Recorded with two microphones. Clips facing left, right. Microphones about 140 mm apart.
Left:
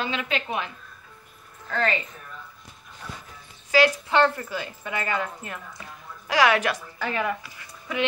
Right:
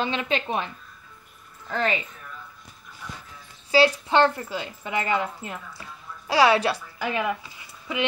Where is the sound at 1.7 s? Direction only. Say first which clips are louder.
Even; 15° right (ahead or behind).